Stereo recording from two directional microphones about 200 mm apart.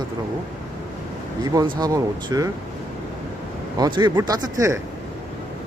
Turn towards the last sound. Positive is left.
turn(degrees=-15)  # may be behind; listen again after turning